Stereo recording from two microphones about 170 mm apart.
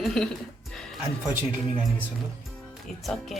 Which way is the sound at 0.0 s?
Centre (ahead or behind).